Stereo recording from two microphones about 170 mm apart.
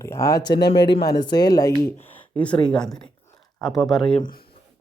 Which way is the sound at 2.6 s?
5° left (ahead or behind).